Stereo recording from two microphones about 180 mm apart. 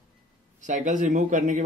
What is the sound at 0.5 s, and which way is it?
Speech, 45° right (ahead or behind).